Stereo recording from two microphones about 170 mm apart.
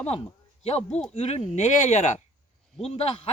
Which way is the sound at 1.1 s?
35° left (ahead or behind).